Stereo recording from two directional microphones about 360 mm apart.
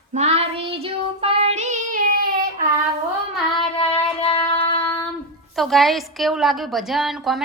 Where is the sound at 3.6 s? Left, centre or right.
Centre.